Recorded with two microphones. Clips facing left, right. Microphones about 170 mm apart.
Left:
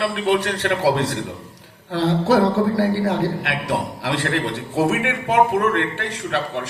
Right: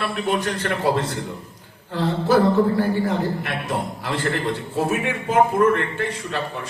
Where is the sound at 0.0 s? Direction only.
75° left (ahead or behind).